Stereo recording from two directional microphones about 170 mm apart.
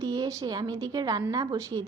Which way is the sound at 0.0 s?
20° right (ahead or behind).